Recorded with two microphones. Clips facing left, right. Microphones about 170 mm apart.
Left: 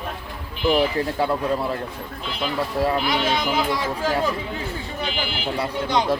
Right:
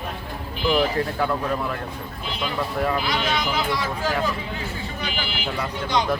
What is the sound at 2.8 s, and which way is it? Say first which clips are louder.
Speech: left 3 dB; 25° left (ahead or behind).